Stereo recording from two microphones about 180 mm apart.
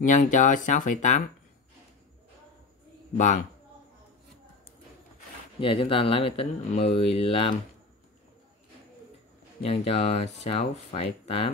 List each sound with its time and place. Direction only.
0.0 s speech: 45° left (ahead or behind)
3.2 s speech: 45° left (ahead or behind)
5.6 s speech: 30° left (ahead or behind)
9.6 s speech: 35° left (ahead or behind)